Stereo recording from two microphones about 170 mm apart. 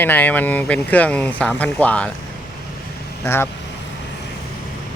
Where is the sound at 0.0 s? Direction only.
10° left (ahead or behind).